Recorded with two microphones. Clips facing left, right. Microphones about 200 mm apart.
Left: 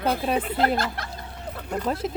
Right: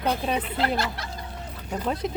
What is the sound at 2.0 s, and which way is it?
Speech, centre (ahead or behind).